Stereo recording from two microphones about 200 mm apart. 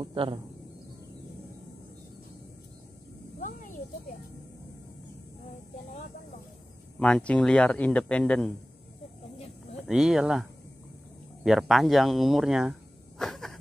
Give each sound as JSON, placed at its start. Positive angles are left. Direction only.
{"t": 0.0, "sound": "a man's voice", "side_deg": -25}
{"t": 3.3, "sound": "a sound", "side_deg": 40}
{"t": 7.0, "sound": "speech", "side_deg": 5}
{"t": 9.8, "sound": "speech", "side_deg": 0}
{"t": 11.4, "sound": "speech", "side_deg": 0}
{"t": 13.2, "sound": "a sound", "side_deg": 0}